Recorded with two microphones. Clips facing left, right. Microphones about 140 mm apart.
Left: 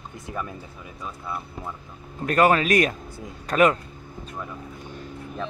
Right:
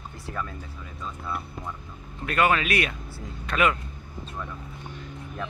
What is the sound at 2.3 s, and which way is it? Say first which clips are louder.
Speech: left 4 dB; 40° left (ahead or behind).